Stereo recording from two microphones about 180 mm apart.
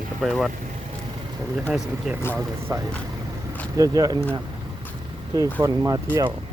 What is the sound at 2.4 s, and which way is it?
Speech, 15° right (ahead or behind).